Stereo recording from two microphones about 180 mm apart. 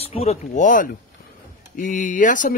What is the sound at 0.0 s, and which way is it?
A man's voice, 35° left (ahead or behind).